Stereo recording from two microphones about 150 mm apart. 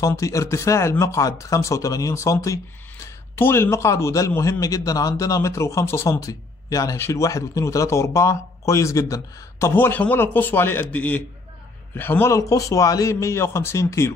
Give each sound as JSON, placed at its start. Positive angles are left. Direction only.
{"t": 0.0, "sound": "speech", "side_deg": 20}